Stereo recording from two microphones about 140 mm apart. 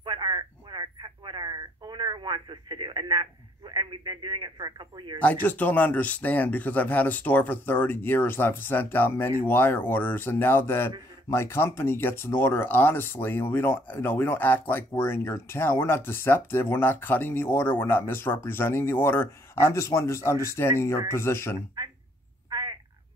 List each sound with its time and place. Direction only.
0.0 s telephone: 35° right (ahead or behind)
3.7 s speech: 35° right (ahead or behind)
5.2 s speech: 10° left (ahead or behind)
21.8 s a sound: 30° right (ahead or behind)
22.5 s frog: 30° right (ahead or behind)